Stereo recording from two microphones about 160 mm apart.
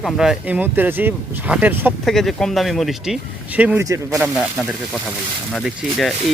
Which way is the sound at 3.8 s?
20° right (ahead or behind).